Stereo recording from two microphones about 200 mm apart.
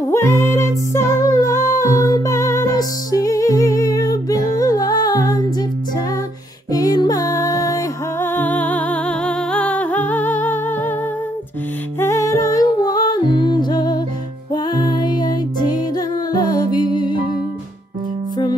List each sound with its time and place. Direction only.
0.1 s music: 15° left (ahead or behind)
6.7 s music: 20° left (ahead or behind)
12.0 s music: 15° left (ahead or behind)